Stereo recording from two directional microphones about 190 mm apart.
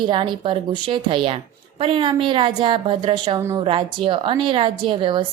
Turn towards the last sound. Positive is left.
turn(degrees=-25)  # may be behind; listen again after turning